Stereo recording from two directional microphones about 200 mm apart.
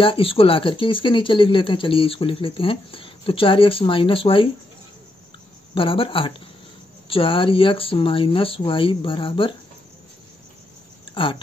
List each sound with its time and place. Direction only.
0.0 s speech: 25° left (ahead or behind)
5.8 s speech: 25° left (ahead or behind)
11.1 s speech: 25° left (ahead or behind)